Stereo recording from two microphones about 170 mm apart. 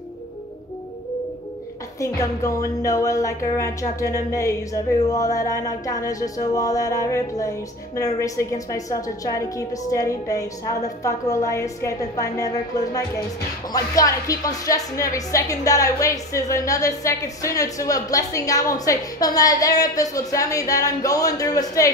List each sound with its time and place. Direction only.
2.0 s a woman's voice: 20° left (ahead or behind)